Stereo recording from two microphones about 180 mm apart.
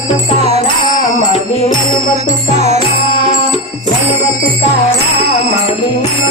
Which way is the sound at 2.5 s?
40° right (ahead or behind).